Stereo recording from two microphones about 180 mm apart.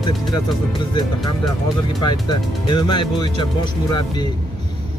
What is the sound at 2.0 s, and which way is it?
Speech, 25° left (ahead or behind).